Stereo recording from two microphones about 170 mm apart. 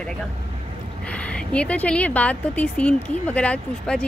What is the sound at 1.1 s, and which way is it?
Speech, 5° left (ahead or behind).